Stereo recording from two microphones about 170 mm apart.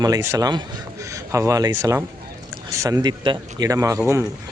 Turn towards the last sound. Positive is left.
turn(degrees=-20)  # may be behind; listen again after turning